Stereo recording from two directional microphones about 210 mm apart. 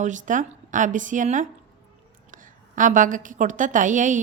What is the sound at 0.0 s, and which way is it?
A woman's voice, 35° right (ahead or behind).